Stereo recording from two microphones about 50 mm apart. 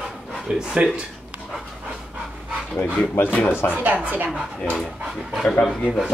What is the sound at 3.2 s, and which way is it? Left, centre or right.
Speech, left.